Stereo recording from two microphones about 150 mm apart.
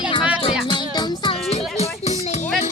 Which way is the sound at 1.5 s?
45° left (ahead or behind).